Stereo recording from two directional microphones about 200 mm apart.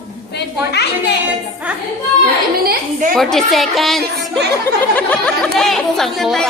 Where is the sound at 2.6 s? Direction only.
50° right (ahead or behind).